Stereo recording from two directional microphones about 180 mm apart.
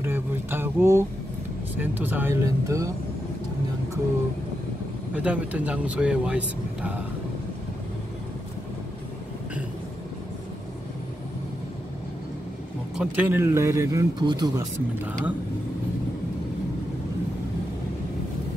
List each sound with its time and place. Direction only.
0.0 s a sound: 10° right (ahead or behind)
1.8 s speech: 10° right (ahead or behind)
5.1 s speech: 10° right (ahead or behind)
12.9 s speech: 10° right (ahead or behind); by 14.7 s 25° right (ahead or behind)
15.0 s speech: 10° right (ahead or behind)